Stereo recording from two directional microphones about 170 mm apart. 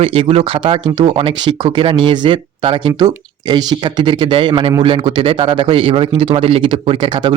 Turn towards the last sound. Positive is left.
turn(degrees=-25)  # may be behind; listen again after turning